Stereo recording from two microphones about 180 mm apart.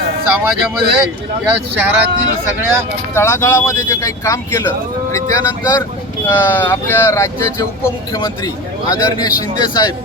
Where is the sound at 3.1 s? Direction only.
15° left (ahead or behind).